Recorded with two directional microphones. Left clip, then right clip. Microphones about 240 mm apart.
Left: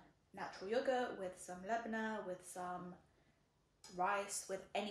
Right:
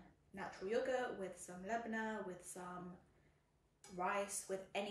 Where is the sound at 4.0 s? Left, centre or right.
Centre.